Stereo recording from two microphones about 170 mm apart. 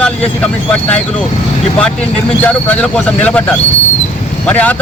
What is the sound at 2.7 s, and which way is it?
Speech, 10° left (ahead or behind).